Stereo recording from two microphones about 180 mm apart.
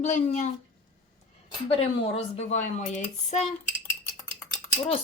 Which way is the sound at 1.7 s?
35° left (ahead or behind).